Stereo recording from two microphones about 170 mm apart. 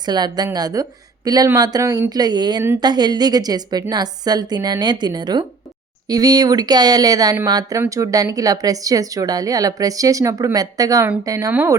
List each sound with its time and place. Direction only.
0.0 s speech: 25° right (ahead or behind)